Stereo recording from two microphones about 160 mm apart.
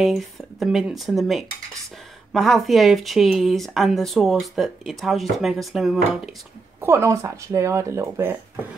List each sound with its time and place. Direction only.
0.0 s speech: centre (ahead or behind)
6.8 s speech: 15° right (ahead or behind)